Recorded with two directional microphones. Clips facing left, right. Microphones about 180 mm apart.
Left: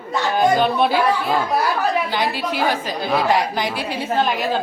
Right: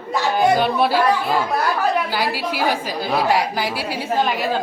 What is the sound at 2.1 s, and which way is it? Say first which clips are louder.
Speech: left 1 dB; 5° right (ahead or behind).